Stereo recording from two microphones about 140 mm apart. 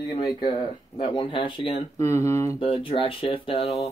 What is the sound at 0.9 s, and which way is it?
Speech, 40° left (ahead or behind).